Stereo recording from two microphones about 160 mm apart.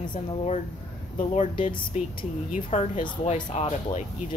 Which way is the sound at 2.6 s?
40° left (ahead or behind).